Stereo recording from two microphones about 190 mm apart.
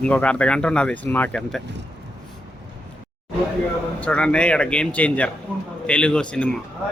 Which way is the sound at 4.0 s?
5° left (ahead or behind).